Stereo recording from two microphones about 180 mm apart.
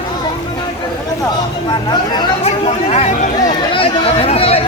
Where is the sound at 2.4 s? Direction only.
35° left (ahead or behind).